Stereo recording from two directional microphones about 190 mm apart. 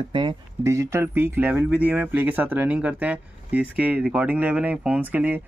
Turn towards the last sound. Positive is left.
turn(degrees=-10)  # may be behind; listen again after turning